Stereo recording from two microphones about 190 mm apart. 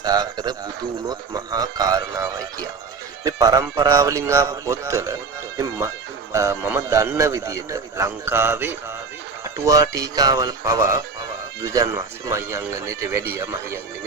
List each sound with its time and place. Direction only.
0.0 s speech: 20° right (ahead or behind)
6.3 s speech: 15° right (ahead or behind)